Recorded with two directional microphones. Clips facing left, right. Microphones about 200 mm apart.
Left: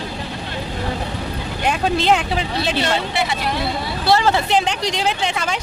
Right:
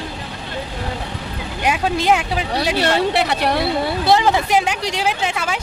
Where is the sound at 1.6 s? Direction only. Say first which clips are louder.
Even; 5° right (ahead or behind).